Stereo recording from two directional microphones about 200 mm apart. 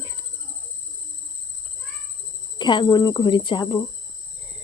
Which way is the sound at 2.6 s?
20° left (ahead or behind).